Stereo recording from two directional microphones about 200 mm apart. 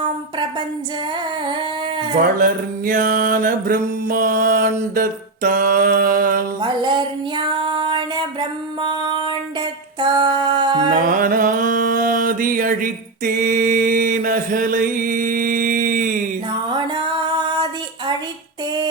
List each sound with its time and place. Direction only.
2.2 s mantra: 45° right (ahead or behind)
6.6 s music: 20° right (ahead or behind)
11.0 s mantra: 45° right (ahead or behind)
16.5 s female singing: 20° right (ahead or behind)